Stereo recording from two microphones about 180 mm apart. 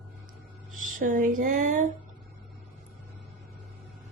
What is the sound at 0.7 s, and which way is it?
Speech, 50° right (ahead or behind).